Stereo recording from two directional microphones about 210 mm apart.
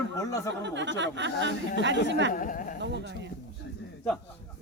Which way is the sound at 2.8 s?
55° right (ahead or behind).